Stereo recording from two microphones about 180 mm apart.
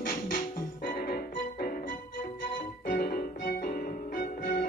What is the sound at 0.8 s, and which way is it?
Music, 55° left (ahead or behind).